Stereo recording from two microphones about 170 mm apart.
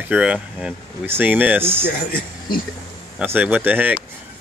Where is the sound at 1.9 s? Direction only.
55° left (ahead or behind).